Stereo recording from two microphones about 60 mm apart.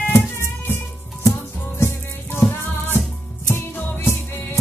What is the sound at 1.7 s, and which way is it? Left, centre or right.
Music, left.